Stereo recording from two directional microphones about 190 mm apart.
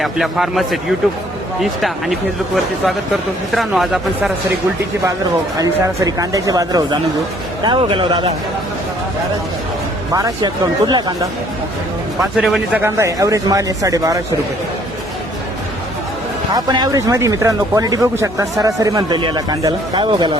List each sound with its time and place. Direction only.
0.0 s speech: centre (ahead or behind)
5.5 s speech: 20° right (ahead or behind)
10.1 s speech: 15° right (ahead or behind)
12.2 s speech: centre (ahead or behind)
12.8 s speech: 15° right (ahead or behind)
16.6 s speech: 20° right (ahead or behind)